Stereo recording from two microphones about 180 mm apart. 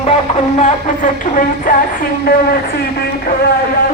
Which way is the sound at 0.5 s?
40° left (ahead or behind).